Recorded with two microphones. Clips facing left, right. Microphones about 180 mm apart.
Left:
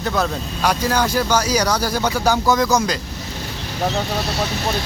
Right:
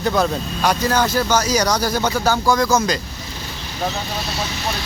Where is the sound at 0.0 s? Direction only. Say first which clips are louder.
Right 3 dB; centre (ahead or behind); by 2.7 s 20° left (ahead or behind).